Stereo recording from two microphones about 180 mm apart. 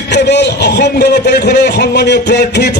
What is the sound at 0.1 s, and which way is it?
A man's voice, 70° left (ahead or behind).